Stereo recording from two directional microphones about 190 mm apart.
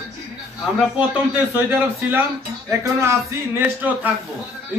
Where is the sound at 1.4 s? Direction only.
10° right (ahead or behind).